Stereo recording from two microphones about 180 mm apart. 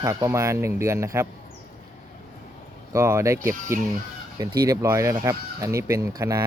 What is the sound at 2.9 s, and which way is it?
Speech, 15° right (ahead or behind).